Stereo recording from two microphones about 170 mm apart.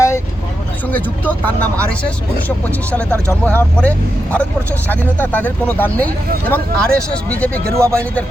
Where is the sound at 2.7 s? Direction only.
10° left (ahead or behind).